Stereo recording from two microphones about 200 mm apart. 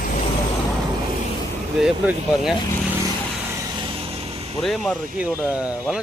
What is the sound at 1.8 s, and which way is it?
Speech, centre (ahead or behind).